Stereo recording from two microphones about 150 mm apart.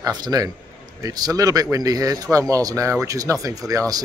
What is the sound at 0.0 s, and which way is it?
A man's voice, 25° right (ahead or behind).